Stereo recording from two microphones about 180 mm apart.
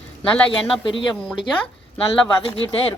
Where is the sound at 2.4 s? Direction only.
30° left (ahead or behind).